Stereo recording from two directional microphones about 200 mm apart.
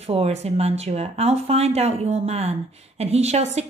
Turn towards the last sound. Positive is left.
turn(degrees=-35)  # may be behind; listen again after turning